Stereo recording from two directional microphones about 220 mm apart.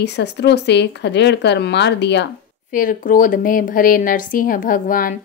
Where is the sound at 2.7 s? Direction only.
35° left (ahead or behind).